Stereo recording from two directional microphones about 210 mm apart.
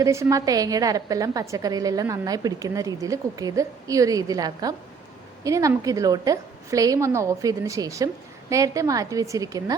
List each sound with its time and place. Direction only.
0.0 s a woman's voice: 15° right (ahead or behind)